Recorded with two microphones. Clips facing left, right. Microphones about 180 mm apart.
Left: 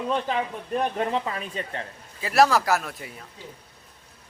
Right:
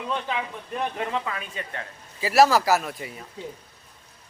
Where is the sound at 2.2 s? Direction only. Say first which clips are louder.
Right 1 dB; 5° right (ahead or behind).